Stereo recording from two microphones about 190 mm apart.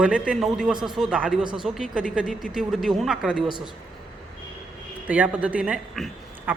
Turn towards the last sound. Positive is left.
turn(degrees=-5)  # may be behind; listen again after turning